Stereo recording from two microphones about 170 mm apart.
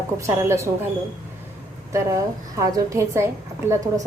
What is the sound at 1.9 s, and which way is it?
A woman's voice, 20° right (ahead or behind).